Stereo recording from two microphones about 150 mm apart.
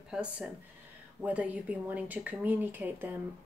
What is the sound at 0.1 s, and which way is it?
Speech, 5° right (ahead or behind).